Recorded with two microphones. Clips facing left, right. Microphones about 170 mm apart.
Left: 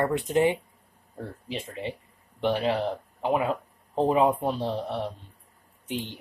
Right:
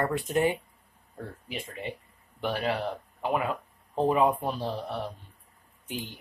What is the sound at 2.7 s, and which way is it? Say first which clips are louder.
Speech: left 3 dB; 15° left (ahead or behind).